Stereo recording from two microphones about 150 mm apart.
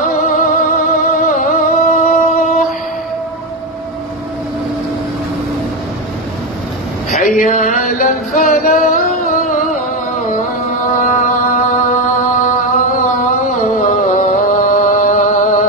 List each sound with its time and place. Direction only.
0.0 s music: 60° left (ahead or behind)
2.3 s music: 50° left (ahead or behind)
7.1 s a sound: 60° left (ahead or behind)
8.5 s music: 65° left (ahead or behind)